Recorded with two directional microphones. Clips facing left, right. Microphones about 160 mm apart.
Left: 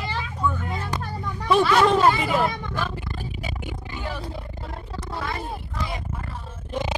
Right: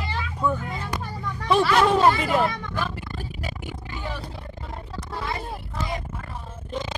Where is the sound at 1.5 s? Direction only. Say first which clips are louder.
Left 1 dB; centre (ahead or behind).